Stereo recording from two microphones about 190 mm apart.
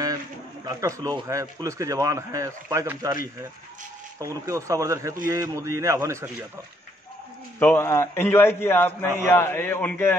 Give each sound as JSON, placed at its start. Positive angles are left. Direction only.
{"t": 0.7, "sound": "speech", "side_deg": -15}
{"t": 4.2, "sound": "speech", "side_deg": -15}
{"t": 7.5, "sound": "a man's voice", "side_deg": 10}